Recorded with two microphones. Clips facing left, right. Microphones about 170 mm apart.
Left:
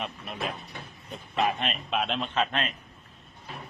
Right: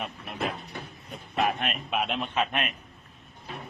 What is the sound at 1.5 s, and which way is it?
A man's voice, 5° right (ahead or behind).